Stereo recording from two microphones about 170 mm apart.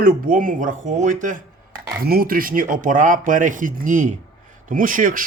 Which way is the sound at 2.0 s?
60° right (ahead or behind).